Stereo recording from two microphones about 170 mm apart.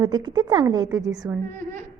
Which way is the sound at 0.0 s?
25° right (ahead or behind).